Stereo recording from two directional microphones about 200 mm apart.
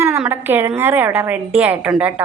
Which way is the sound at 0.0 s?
10° right (ahead or behind).